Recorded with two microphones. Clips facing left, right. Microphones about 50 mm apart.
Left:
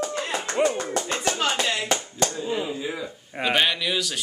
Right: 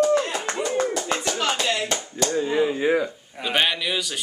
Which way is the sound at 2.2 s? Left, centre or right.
Right.